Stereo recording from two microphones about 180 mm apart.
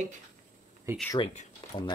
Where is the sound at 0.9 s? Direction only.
15° right (ahead or behind).